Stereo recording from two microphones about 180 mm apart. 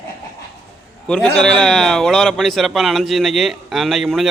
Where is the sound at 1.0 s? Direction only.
5° left (ahead or behind).